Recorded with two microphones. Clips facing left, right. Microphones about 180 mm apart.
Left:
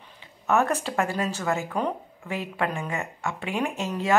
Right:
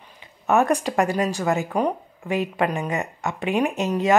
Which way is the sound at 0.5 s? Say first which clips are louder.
Right 4 dB; 15° right (ahead or behind).